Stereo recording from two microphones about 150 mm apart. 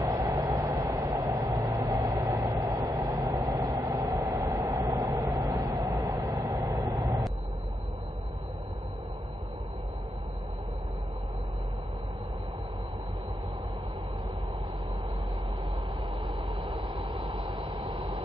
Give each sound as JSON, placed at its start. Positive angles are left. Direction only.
{"t": 0.0, "sound": "vehicle", "side_deg": -20}
{"t": 4.5, "sound": "train", "side_deg": -25}
{"t": 16.3, "sound": "vehicle", "side_deg": -40}